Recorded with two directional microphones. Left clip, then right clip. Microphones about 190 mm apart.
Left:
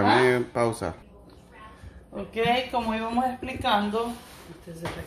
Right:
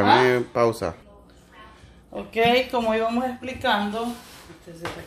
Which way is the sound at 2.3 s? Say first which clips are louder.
Right 5 dB; 50° right (ahead or behind).